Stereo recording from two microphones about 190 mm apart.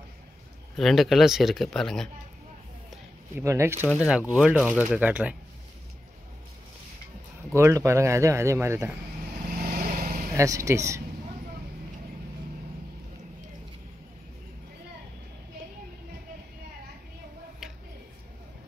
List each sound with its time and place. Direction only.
0.7 s speech: centre (ahead or behind)
3.3 s speech: 15° right (ahead or behind)
3.8 s speech: 15° left (ahead or behind)
4.4 s speech: 5° right (ahead or behind)
7.5 s speech: 15° right (ahead or behind)
9.6 s vehicle: 50° right (ahead or behind)
10.3 s speech: 15° right (ahead or behind)